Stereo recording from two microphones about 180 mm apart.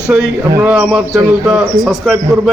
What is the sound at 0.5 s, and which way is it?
A man's voice, 10° right (ahead or behind).